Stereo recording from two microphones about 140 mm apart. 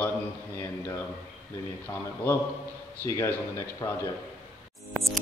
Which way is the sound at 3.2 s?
20° left (ahead or behind).